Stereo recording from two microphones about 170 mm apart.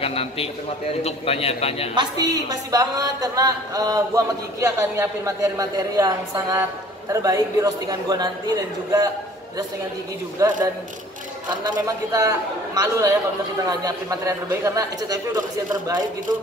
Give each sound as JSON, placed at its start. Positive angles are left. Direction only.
{"t": 0.0, "sound": "a man's voice", "side_deg": 35}
{"t": 2.0, "sound": "a woman's voice", "side_deg": -25}
{"t": 10.4, "sound": "a woman's voice", "side_deg": -20}
{"t": 11.6, "sound": "a woman's voice", "side_deg": -25}